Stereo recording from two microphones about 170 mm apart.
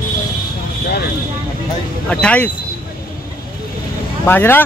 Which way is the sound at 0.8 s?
65° left (ahead or behind).